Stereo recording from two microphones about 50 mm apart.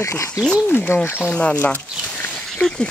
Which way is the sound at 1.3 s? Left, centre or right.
Left.